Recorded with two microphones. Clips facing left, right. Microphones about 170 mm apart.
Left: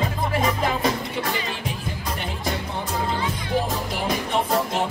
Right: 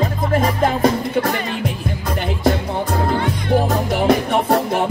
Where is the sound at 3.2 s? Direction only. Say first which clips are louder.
Right 7 dB; 65° right (ahead or behind).